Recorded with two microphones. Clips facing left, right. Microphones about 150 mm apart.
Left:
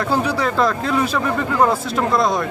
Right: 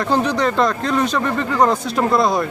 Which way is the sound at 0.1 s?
5° left (ahead or behind).